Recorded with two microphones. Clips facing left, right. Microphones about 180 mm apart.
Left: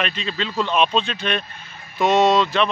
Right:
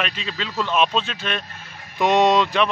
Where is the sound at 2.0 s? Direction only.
15° right (ahead or behind).